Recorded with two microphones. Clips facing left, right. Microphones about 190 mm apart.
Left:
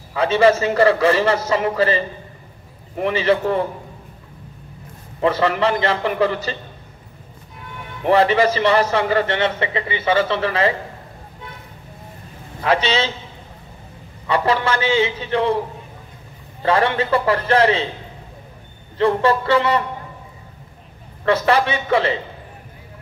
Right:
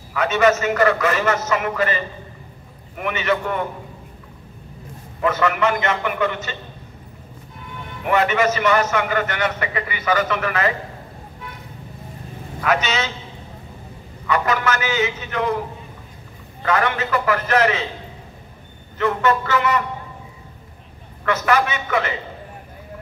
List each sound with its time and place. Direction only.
0.1 s a man's voice: 30° left (ahead or behind)
5.2 s a man's voice: 30° left (ahead or behind)
8.0 s a man's voice: 30° left (ahead or behind)
12.6 s a man's voice: 30° left (ahead or behind)
14.2 s a man's voice: 30° left (ahead or behind)
16.6 s a man's voice: 30° left (ahead or behind)
18.9 s a man's voice: 30° left (ahead or behind)
21.3 s a man's voice: 30° left (ahead or behind)